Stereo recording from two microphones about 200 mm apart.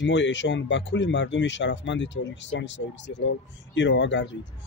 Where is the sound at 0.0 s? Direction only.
65° left (ahead or behind).